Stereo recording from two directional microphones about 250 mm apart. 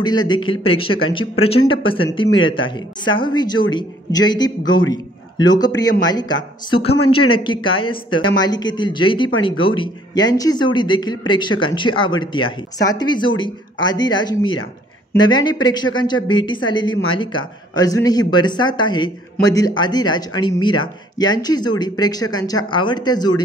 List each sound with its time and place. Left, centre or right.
0.0 s speech: centre